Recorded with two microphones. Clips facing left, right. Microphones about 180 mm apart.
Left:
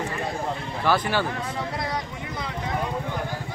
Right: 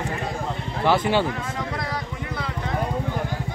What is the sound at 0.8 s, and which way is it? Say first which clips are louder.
Speech: right 3 dB; 25° right (ahead or behind).